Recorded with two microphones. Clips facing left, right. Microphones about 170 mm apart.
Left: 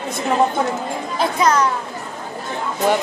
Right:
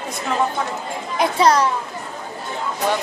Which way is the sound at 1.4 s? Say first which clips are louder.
Right 1 dB; 35° right (ahead or behind).